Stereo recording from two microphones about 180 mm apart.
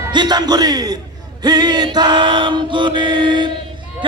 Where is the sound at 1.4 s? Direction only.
25° right (ahead or behind).